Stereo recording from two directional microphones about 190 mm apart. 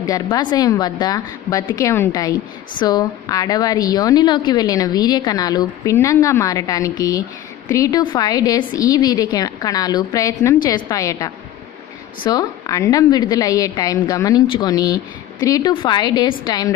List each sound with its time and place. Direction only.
0.1 s a woman's voice: 20° left (ahead or behind)